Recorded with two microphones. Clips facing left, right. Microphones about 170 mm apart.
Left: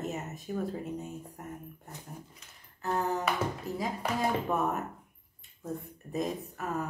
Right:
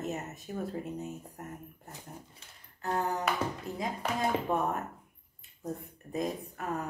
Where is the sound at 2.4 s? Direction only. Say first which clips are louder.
Even; 30° right (ahead or behind).